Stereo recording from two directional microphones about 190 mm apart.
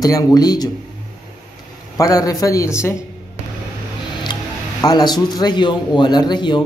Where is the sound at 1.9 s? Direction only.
20° left (ahead or behind).